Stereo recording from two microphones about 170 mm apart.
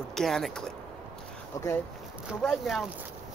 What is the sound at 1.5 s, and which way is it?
Speech, 20° left (ahead or behind).